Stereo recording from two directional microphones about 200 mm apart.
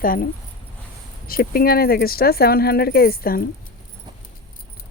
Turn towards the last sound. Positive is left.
turn(degrees=45)  # may be behind; listen again after turning